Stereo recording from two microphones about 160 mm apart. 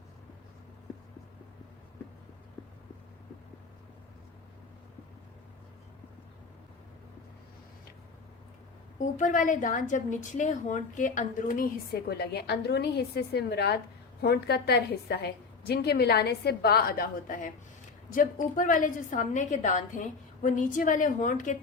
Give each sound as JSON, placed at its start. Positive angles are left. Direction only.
{"t": 9.0, "sound": "a woman's voice", "side_deg": 50}